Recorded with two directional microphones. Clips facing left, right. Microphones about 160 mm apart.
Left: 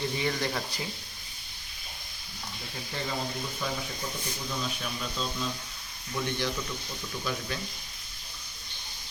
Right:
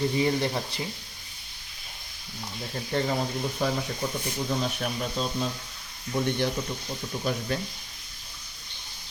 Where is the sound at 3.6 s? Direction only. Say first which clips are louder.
Right 7 dB; 70° right (ahead or behind).